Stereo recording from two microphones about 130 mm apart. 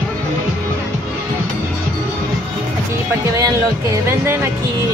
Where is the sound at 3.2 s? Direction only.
25° right (ahead or behind).